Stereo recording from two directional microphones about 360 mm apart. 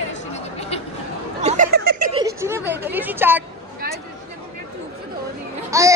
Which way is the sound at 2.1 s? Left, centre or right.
Centre.